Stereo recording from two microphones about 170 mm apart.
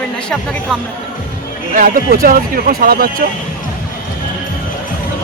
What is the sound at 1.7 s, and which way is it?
Speech, 55° right (ahead or behind).